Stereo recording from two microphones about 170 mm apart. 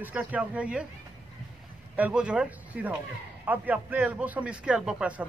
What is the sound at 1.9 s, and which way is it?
A man's voice, 10° right (ahead or behind).